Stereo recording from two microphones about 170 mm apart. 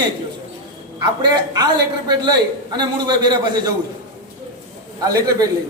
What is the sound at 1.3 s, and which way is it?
A man's voice, 25° right (ahead or behind).